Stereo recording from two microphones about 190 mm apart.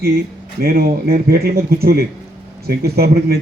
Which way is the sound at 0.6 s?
55° right (ahead or behind).